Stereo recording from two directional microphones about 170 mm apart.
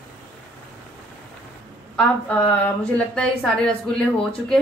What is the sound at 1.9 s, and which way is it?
A woman's voice, 10° left (ahead or behind).